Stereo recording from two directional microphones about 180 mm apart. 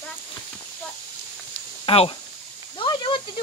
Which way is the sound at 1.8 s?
30° left (ahead or behind).